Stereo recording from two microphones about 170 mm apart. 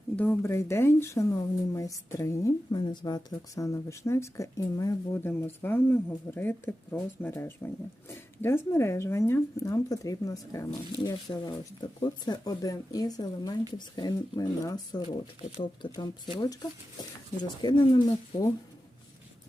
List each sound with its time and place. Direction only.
0.2 s speech: 15° left (ahead or behind)